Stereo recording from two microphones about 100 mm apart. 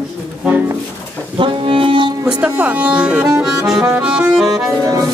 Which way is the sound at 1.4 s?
60° right (ahead or behind).